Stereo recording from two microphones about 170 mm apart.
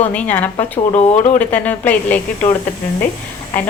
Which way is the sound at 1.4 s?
10° left (ahead or behind).